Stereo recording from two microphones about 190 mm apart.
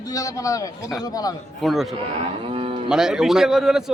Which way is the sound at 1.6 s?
Centre (ahead or behind).